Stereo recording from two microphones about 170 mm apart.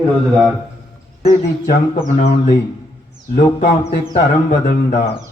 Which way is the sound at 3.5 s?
40° left (ahead or behind).